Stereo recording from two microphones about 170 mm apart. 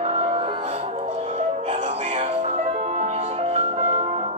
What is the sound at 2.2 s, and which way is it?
Music, 35° right (ahead or behind).